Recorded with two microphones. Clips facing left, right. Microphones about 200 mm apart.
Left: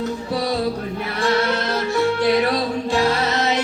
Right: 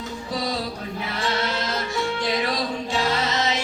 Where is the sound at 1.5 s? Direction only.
65° left (ahead or behind).